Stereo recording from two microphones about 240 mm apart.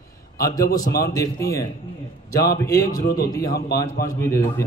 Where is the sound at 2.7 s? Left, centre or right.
Centre.